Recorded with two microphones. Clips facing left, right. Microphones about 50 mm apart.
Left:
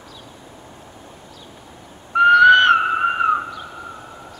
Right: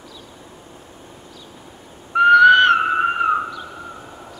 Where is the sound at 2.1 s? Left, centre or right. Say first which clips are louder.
Even; centre.